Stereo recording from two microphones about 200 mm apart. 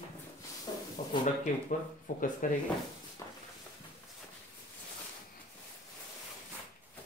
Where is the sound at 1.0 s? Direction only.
40° left (ahead or behind).